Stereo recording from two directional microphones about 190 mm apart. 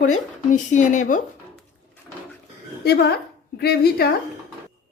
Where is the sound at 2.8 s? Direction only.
60° left (ahead or behind).